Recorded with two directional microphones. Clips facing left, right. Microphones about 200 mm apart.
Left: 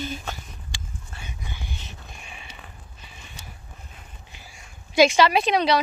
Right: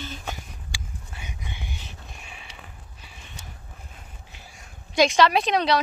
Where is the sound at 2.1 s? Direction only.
Centre (ahead or behind).